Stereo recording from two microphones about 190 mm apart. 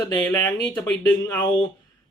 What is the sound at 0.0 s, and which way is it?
Speech, 20° left (ahead or behind).